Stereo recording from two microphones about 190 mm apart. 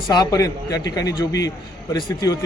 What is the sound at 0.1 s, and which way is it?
Speech, 20° left (ahead or behind).